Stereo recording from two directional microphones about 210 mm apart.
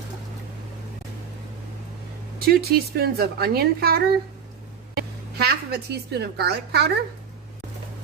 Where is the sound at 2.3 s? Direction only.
45° right (ahead or behind).